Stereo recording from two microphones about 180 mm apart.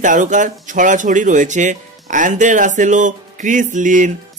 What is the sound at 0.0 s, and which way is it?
Speech, 45° right (ahead or behind).